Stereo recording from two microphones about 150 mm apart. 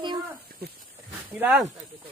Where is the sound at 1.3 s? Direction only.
10° right (ahead or behind).